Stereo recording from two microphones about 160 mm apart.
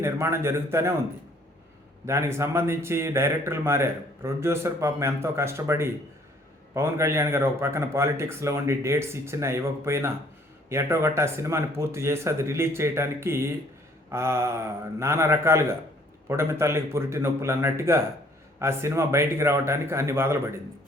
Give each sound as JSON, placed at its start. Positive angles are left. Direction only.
{"t": 0.0, "sound": "a man's voice", "side_deg": -15}
{"t": 2.0, "sound": "a man's voice", "side_deg": -15}